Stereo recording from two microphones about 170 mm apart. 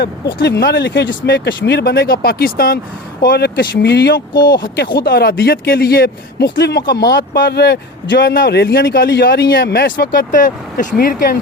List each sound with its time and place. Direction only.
0.0 s speech: 85° left
4.4 s speech: 25° left (ahead or behind)
4.8 s speech: 65° left (ahead or behind)